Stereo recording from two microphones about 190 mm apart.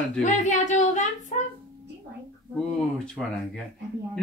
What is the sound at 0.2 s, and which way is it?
Speech, 40° left (ahead or behind).